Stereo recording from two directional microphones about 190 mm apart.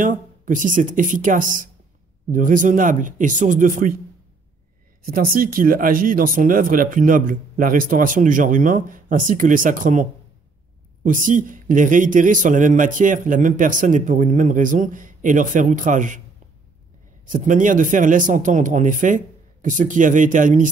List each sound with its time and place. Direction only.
0.0 s a man's voice: 45° right (ahead or behind)
5.0 s a man's voice: 50° right (ahead or behind)
11.1 s a man's voice: 45° right (ahead or behind)
17.3 s a man's voice: 45° right (ahead or behind)